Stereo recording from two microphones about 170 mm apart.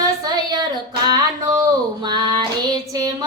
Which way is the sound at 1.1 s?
20° right (ahead or behind).